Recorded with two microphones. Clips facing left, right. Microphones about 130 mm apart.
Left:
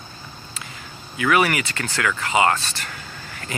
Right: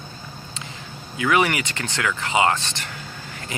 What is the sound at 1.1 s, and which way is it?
Speech, 20° right (ahead or behind).